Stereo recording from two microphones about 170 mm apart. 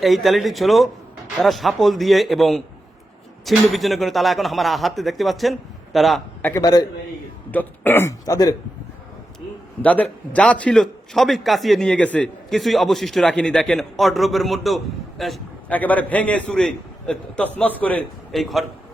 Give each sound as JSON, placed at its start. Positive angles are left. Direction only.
{"t": 0.0, "sound": "a man's voice", "side_deg": 0}
{"t": 6.6, "sound": "a man's voice", "side_deg": 25}
{"t": 7.5, "sound": "a man's voice", "side_deg": 10}
{"t": 9.8, "sound": "a man's voice", "side_deg": 10}